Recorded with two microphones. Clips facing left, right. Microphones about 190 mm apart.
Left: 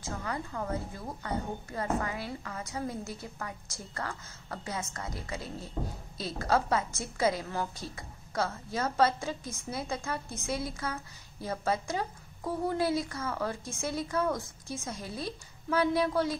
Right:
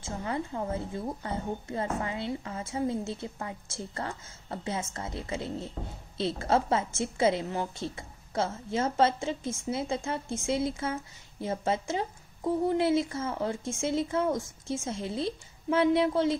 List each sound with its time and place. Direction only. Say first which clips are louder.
0.0 s a woman's voice: right 3 dB; 25° right (ahead or behind)